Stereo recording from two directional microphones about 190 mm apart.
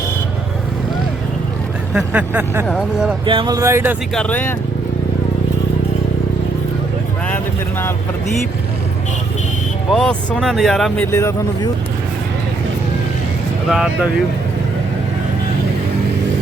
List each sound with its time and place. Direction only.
1.9 s speech: 5° right (ahead or behind)
3.2 s speech: 25° right (ahead or behind)
4.1 s speech: 5° left (ahead or behind)
7.3 s speech: 10° left (ahead or behind)
9.9 s speech: 5° left (ahead or behind)
13.7 s speech: centre (ahead or behind)